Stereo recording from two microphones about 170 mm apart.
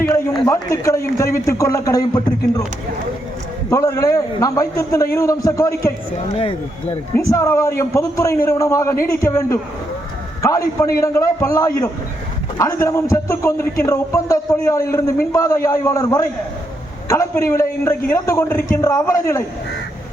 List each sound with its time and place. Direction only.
0.0 s a man's voice: 10° left (ahead or behind)
3.7 s a man's voice: 20° left (ahead or behind)
6.3 s speech: 35° left (ahead or behind)
7.2 s a man's voice: 20° left (ahead or behind)